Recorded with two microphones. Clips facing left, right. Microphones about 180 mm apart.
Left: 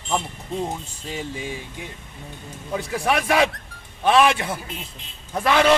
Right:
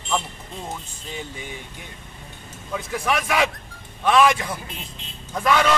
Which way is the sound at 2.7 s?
35° left (ahead or behind).